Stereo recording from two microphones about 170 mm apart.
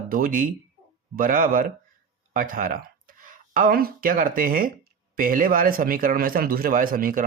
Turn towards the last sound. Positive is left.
turn(degrees=-55)  # may be behind; listen again after turning